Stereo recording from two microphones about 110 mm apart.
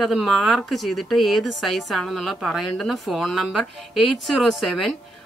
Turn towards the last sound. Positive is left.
turn(degrees=0)  # may be behind; listen again after turning